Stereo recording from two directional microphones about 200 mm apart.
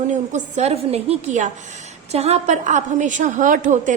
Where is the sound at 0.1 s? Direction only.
40° right (ahead or behind).